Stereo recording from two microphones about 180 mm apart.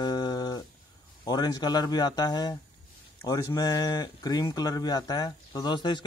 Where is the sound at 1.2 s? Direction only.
20° left (ahead or behind).